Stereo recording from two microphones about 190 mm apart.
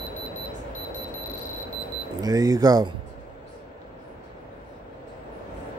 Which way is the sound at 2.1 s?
20° right (ahead or behind).